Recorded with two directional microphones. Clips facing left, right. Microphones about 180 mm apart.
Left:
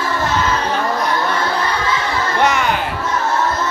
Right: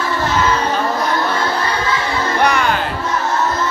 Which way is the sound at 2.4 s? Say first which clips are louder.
Even; 20° left (ahead or behind).